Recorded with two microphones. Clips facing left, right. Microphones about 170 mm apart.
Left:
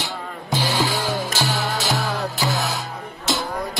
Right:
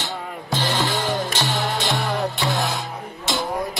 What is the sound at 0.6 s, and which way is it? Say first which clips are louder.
Music: left 1 dB; 10° left (ahead or behind).